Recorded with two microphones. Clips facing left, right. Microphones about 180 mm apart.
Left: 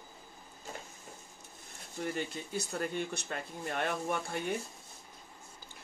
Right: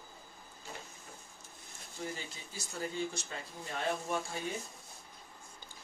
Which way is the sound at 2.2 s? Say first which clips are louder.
Left 10 dB; 60° left (ahead or behind).